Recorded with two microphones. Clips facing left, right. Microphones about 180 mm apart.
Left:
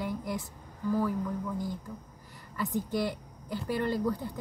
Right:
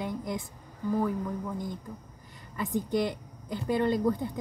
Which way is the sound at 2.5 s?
20° right (ahead or behind).